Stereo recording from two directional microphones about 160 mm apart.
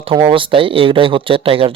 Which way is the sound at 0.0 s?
35° right (ahead or behind).